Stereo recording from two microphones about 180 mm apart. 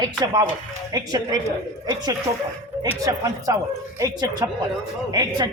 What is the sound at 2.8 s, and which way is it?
A woman's voice, 20° right (ahead or behind).